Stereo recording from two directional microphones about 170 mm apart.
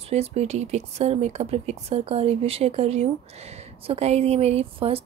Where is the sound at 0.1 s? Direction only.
40° right (ahead or behind).